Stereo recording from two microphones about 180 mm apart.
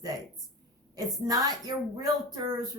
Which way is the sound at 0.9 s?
20° right (ahead or behind).